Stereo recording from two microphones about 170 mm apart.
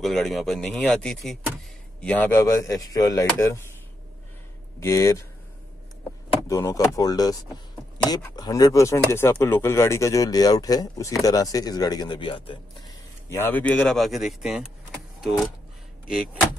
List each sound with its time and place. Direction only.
0.0 s speech: centre (ahead or behind); by 3.6 s 15° left (ahead or behind)
4.7 s speech: 15° left (ahead or behind)
6.4 s speech: 20° left (ahead or behind)
13.3 s speech: 10° left (ahead or behind)